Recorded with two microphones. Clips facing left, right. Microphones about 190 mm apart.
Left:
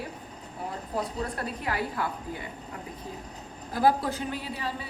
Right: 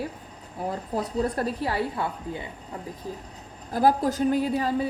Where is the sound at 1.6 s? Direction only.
30° right (ahead or behind).